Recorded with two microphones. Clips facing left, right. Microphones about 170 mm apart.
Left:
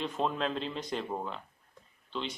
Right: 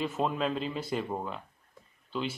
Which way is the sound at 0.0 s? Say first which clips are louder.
Right 2 dB; 5° right (ahead or behind).